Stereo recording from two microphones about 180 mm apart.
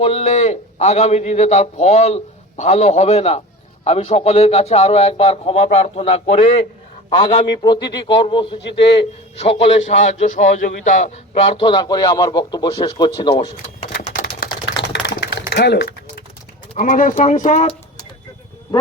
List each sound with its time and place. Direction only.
0.0 s a man's voice: 35° left (ahead or behind)
7.6 s a man's voice: 20° left (ahead or behind); by 11.5 s 40° left (ahead or behind)
11.5 s a man's voice: 25° left (ahead or behind)
13.8 s typewriter: 45° left (ahead or behind)
14.8 s typing: 75° left (ahead or behind)
16.7 s speech: 50° left (ahead or behind)